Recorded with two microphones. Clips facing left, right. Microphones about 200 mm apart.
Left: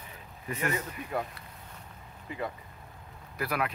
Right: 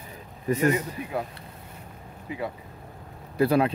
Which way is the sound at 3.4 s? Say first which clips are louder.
Right 11 dB; 30° right (ahead or behind).